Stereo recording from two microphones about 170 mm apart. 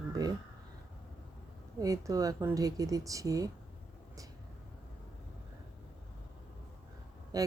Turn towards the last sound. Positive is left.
turn(degrees=-20)  # may be behind; listen again after turning